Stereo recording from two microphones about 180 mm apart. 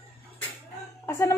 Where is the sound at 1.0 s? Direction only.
15° left (ahead or behind).